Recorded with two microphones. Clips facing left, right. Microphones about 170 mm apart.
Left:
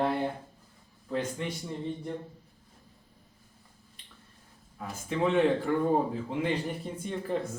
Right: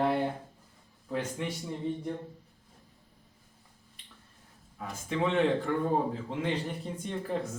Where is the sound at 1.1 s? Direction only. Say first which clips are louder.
Left 1 dB; 10° right (ahead or behind).